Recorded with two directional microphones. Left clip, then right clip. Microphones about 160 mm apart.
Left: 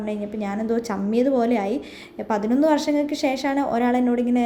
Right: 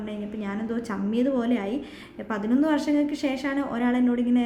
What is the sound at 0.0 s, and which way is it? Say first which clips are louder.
A woman's voice: left 6 dB; 25° left (ahead or behind).